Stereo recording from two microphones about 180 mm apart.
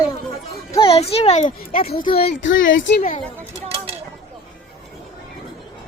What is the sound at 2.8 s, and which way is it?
Speech, 80° left.